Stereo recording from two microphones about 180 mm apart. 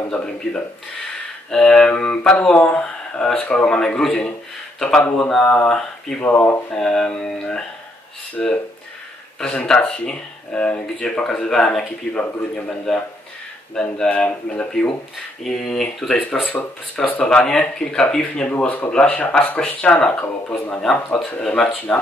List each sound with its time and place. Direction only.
0.1 s speech: 5° left (ahead or behind)